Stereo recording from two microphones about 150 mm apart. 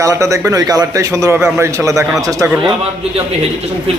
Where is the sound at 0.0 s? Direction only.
20° right (ahead or behind).